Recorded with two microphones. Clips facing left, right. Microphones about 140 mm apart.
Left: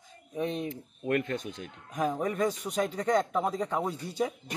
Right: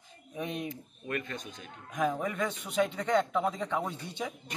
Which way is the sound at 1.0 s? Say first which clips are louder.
Left 7 dB; 70° left (ahead or behind).